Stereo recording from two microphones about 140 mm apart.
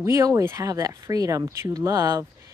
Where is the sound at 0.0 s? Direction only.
20° right (ahead or behind).